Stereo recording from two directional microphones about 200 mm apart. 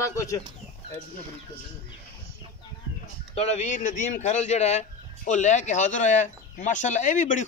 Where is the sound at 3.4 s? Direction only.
35° left (ahead or behind).